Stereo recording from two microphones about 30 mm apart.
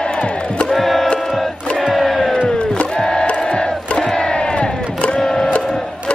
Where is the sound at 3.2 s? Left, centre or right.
Left.